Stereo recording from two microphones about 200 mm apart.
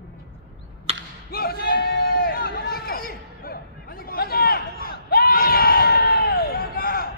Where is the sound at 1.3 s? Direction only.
50° left (ahead or behind).